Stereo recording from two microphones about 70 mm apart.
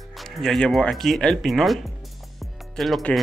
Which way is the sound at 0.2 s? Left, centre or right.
Centre.